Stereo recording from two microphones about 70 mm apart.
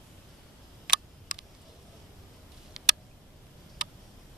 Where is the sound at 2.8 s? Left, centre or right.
Centre.